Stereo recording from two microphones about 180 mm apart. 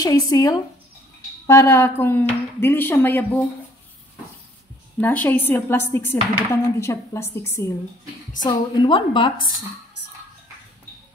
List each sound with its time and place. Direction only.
0.0 s a woman's voice: 20° left (ahead or behind)
5.0 s a woman's voice: 10° left (ahead or behind)
8.5 s a woman's voice: 25° left (ahead or behind)